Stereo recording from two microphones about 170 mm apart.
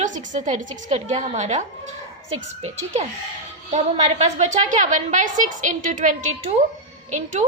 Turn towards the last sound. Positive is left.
turn(degrees=-45)  # may be behind; listen again after turning